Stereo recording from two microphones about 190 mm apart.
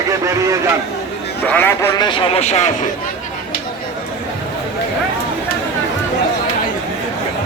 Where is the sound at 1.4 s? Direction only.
10° left (ahead or behind).